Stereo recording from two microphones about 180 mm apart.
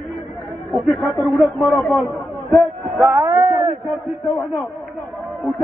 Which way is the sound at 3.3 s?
35° right (ahead or behind).